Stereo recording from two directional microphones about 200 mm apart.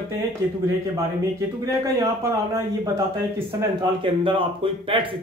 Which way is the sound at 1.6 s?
15° right (ahead or behind).